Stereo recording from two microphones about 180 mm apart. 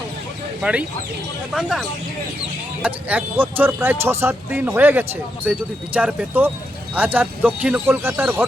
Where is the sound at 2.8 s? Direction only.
10° right (ahead or behind).